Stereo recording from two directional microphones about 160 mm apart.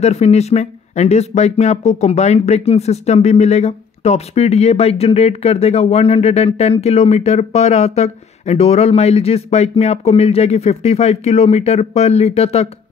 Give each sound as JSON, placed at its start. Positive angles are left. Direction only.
{"t": 0.0, "sound": "speech", "side_deg": 40}